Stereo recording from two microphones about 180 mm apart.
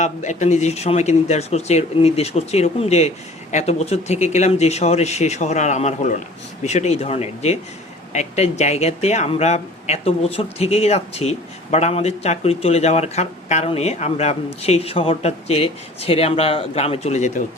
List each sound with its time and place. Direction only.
0.0 s speech: 40° left (ahead or behind)